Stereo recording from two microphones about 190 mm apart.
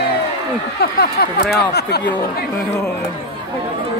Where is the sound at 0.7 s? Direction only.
55° left (ahead or behind).